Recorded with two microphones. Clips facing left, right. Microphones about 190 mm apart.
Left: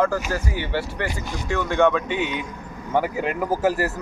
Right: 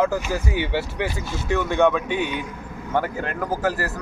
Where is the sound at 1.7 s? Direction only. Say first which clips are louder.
Left 1 dB; 15° right (ahead or behind).